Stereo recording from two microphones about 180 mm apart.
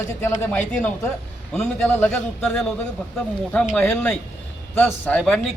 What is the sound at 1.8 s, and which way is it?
A man's voice, 10° left (ahead or behind).